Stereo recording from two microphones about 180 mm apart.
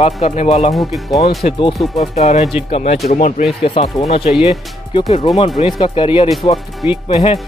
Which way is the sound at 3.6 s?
30° left (ahead or behind).